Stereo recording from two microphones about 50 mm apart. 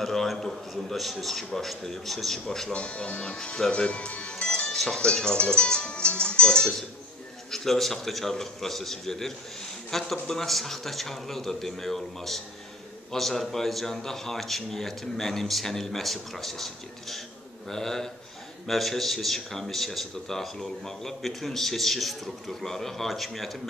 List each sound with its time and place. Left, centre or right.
0.0 s a man's voice: centre
2.7 s a man's voice: left; by 23.7 s centre